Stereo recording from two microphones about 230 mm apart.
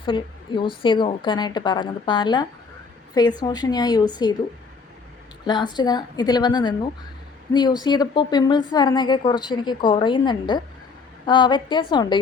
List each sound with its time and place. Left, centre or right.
0.0 s a woman's voice: left
5.5 s a woman's voice: centre